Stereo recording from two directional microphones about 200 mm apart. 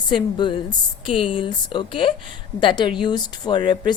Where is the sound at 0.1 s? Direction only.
25° left (ahead or behind).